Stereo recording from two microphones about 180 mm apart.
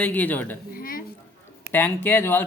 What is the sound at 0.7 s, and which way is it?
Speech, 50° left (ahead or behind).